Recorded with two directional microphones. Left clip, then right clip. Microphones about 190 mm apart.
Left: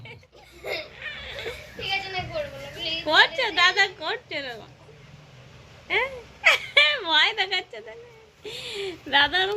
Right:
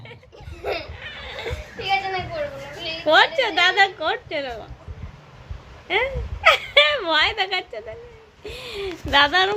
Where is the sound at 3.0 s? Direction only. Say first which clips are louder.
Right 4 dB; 10° right (ahead or behind).